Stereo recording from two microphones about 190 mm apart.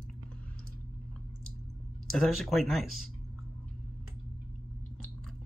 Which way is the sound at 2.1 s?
Centre (ahead or behind).